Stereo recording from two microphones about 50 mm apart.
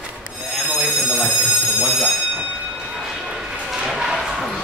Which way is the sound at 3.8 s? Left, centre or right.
Centre.